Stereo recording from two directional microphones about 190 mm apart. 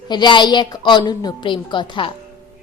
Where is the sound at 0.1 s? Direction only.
25° left (ahead or behind).